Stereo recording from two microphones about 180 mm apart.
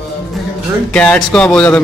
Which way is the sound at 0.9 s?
5° left (ahead or behind).